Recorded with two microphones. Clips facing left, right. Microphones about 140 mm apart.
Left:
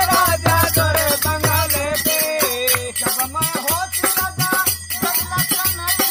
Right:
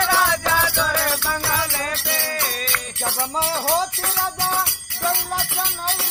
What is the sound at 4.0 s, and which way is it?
Music, 90° left.